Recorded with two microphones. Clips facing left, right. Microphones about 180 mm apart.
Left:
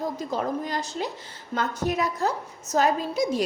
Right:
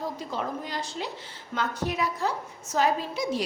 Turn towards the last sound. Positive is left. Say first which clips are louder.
# left 3 dB
turn(degrees=45)  # may be behind; listen again after turning